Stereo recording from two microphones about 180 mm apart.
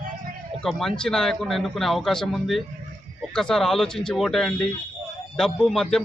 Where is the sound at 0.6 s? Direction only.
Centre (ahead or behind).